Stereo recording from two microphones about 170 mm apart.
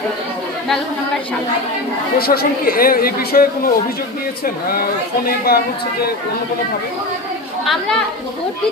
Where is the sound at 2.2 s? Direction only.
65° left (ahead or behind).